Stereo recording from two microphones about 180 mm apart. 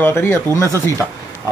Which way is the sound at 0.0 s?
10° left (ahead or behind).